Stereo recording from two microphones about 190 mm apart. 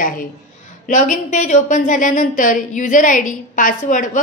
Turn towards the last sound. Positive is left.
turn(degrees=45)  # may be behind; listen again after turning